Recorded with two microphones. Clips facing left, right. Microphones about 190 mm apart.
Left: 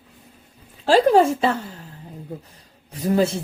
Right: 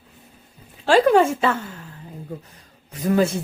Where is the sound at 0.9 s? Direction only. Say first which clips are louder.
Even; 35° left (ahead or behind).